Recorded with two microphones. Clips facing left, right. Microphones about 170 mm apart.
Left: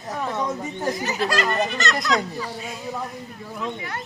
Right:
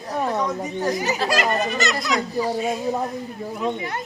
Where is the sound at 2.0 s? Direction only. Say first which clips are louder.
Right 2 dB; 25° right (ahead or behind).